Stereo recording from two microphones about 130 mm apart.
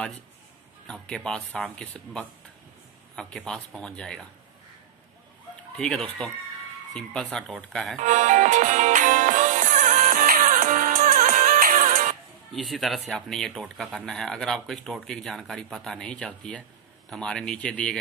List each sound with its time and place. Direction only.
0.8 s speech: 5° left (ahead or behind)
5.8 s speech: 5° left (ahead or behind)
8.0 s music: 70° right (ahead or behind); by 11.9 s 90° right
12.5 s speech: centre (ahead or behind)